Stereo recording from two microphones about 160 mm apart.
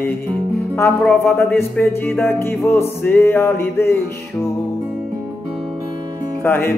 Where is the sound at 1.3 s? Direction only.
10° left (ahead or behind).